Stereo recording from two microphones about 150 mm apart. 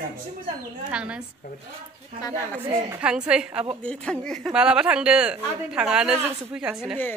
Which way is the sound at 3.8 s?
5° left (ahead or behind).